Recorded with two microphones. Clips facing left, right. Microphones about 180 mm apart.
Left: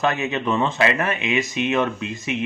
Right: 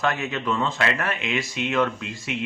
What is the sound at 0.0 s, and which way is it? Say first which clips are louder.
A man's voice: left 3 dB; 20° left (ahead or behind).